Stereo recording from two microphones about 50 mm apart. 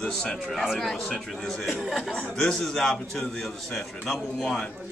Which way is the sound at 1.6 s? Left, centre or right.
Centre.